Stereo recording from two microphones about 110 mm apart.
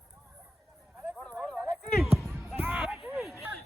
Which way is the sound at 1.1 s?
10° left (ahead or behind).